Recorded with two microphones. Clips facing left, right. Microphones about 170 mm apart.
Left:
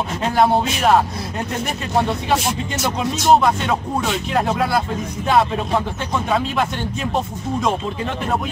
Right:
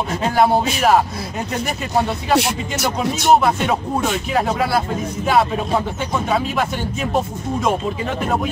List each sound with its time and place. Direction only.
0.2 s speech: centre (ahead or behind)
2.3 s speech: 70° right (ahead or behind)
3.3 s speech: 5° right (ahead or behind)